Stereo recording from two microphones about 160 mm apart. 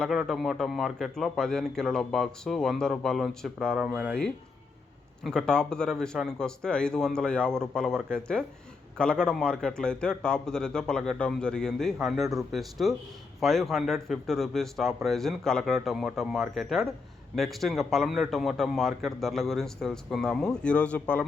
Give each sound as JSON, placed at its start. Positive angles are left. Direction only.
{"t": 0.0, "sound": "a man's voice", "side_deg": 0}
{"t": 5.2, "sound": "a man's voice", "side_deg": 5}